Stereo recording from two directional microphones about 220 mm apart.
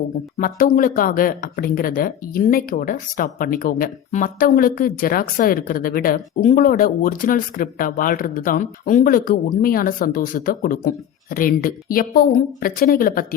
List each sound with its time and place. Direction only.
0.3 s speech: 40° left (ahead or behind)